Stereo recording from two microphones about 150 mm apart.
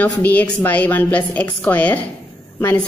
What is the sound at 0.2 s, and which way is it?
Speech, 10° left (ahead or behind).